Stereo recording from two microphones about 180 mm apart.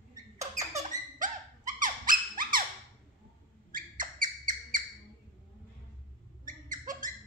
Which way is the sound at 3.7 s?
50° right (ahead or behind).